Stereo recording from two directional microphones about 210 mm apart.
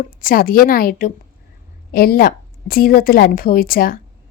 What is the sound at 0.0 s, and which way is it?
A woman's voice, 40° left (ahead or behind).